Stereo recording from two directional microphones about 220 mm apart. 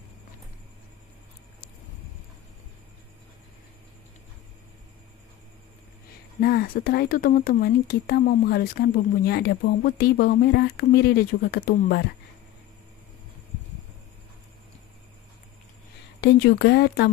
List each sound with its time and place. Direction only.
6.4 s speech: 45° left (ahead or behind)
16.2 s speech: 50° left (ahead or behind)